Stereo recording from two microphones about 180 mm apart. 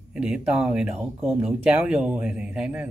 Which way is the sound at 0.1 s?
5° right (ahead or behind).